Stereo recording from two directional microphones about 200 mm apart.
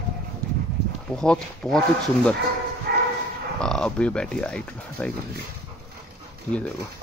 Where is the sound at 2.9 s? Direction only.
55° right (ahead or behind).